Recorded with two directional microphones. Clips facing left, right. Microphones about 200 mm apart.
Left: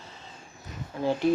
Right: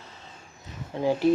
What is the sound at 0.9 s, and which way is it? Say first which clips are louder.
Speech: right 3 dB; 25° right (ahead or behind).